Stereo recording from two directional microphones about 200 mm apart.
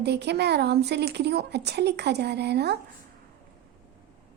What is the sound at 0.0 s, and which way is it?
A woman's voice, 55° right (ahead or behind).